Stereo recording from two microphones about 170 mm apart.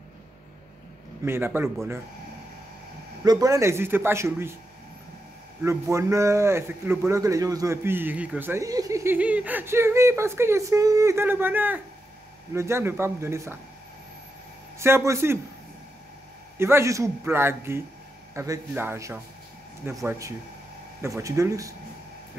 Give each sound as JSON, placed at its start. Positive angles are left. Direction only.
{"t": 1.2, "sound": "a man's voice", "side_deg": -15}
{"t": 3.3, "sound": "a man's voice", "side_deg": -20}
{"t": 5.6, "sound": "a man's voice", "side_deg": -15}
{"t": 14.8, "sound": "a man's voice", "side_deg": -15}
{"t": 16.5, "sound": "a man's voice", "side_deg": -15}